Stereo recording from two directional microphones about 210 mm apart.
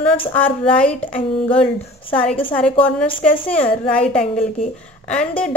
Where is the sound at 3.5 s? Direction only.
5° left (ahead or behind).